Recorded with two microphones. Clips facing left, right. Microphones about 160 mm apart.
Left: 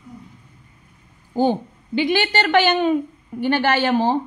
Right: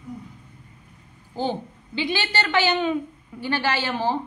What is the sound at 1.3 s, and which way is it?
A woman's voice, 50° left (ahead or behind).